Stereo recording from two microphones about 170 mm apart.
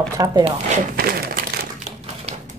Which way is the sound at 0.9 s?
60° right (ahead or behind).